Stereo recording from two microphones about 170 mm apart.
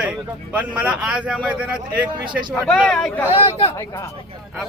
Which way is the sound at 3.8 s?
15° left (ahead or behind).